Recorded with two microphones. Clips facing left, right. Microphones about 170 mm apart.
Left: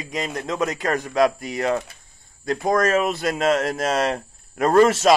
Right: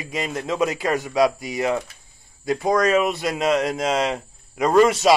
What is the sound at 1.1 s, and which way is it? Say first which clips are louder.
Speech: left 1 dB; 15° right (ahead or behind).